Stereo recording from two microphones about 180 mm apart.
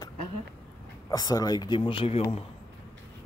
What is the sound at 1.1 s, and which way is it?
Speech, 20° left (ahead or behind).